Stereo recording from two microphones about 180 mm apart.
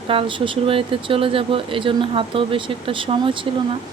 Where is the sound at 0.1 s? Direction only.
30° right (ahead or behind).